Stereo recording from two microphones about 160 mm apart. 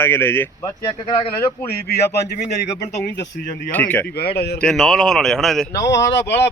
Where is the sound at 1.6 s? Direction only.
85° left.